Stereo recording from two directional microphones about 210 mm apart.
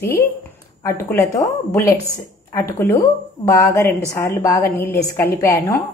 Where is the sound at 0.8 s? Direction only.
15° left (ahead or behind).